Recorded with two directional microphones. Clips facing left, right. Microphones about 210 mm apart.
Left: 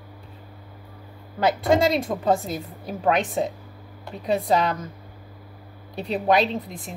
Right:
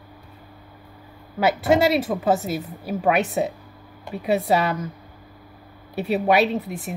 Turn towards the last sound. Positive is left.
turn(degrees=-10)  # may be behind; listen again after turning